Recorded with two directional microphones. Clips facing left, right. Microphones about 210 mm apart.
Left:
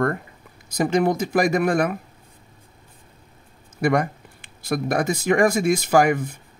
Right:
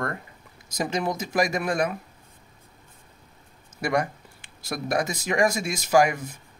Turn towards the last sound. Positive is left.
turn(degrees=55)  # may be behind; listen again after turning